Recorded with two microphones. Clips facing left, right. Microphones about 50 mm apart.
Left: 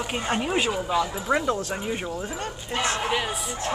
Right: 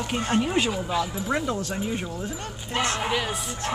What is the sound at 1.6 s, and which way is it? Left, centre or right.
Speech, centre.